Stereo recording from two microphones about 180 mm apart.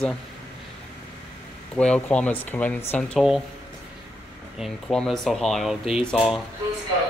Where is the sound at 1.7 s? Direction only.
5° left (ahead or behind).